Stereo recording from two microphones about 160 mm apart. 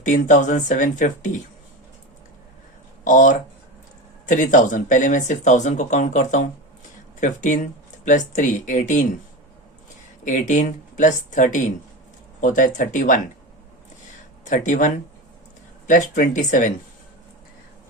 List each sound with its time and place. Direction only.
0.0 s speech: 55° left (ahead or behind)
3.0 s speech: 55° left (ahead or behind)
10.2 s speech: 50° left (ahead or behind)
14.4 s speech: 50° left (ahead or behind)